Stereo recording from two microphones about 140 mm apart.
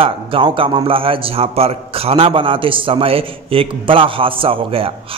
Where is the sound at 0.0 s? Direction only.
40° right (ahead or behind).